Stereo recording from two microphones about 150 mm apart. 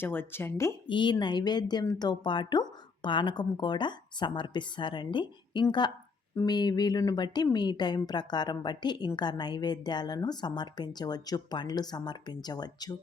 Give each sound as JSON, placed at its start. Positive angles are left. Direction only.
{"t": 0.0, "sound": "speech", "side_deg": 15}
{"t": 0.9, "sound": "speech", "side_deg": 35}